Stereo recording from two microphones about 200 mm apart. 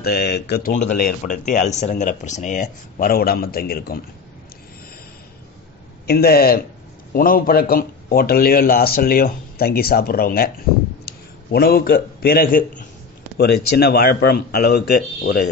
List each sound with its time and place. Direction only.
0.0 s speech: 55° left (ahead or behind)
0.9 s speech: 45° left (ahead or behind)
6.0 s a man's voice: 50° left (ahead or behind)